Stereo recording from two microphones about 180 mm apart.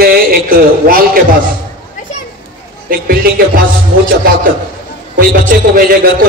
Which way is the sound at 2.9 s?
50° right (ahead or behind).